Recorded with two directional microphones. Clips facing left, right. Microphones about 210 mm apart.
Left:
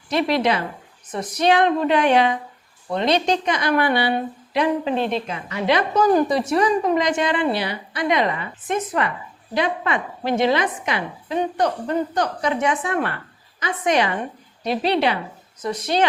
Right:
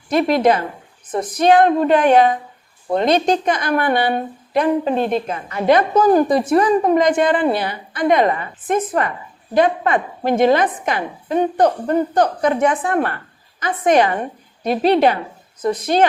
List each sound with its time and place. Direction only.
0.1 s speech: 50° right (ahead or behind)